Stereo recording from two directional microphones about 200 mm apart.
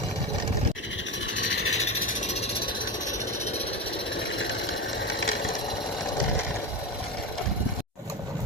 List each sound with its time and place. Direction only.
4.4 s sewing machine: 70° left (ahead or behind)